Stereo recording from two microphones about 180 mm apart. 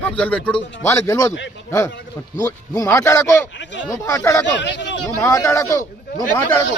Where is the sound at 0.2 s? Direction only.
5° left (ahead or behind).